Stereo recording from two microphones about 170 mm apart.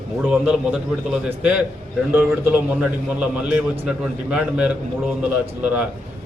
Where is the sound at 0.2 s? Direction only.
5° right (ahead or behind).